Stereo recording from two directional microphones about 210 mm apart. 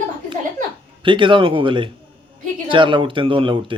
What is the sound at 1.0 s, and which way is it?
Speech, 25° right (ahead or behind).